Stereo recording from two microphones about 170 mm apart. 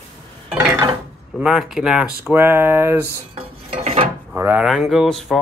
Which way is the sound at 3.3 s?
35° right (ahead or behind).